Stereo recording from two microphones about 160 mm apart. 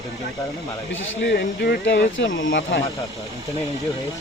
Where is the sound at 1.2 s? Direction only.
85° left.